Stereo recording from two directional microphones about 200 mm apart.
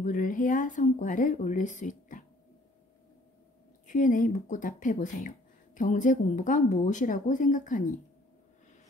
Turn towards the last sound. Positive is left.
turn(degrees=40)  # may be behind; listen again after turning